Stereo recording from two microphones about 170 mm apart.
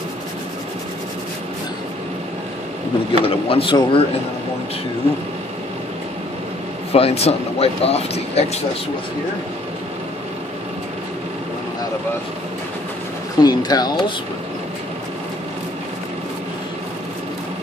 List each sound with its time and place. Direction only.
3.1 s speech: 35° left (ahead or behind)
6.9 s speech: 35° left (ahead or behind)
13.4 s speech: 25° left (ahead or behind)